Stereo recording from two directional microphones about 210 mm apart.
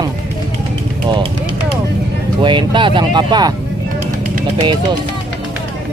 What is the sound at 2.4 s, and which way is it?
Speech, 20° right (ahead or behind).